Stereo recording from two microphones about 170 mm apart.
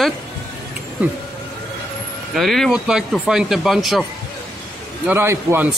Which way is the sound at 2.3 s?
Centre (ahead or behind).